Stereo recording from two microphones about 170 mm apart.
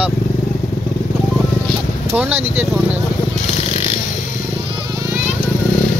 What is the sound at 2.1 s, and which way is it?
Speech, 10° right (ahead or behind).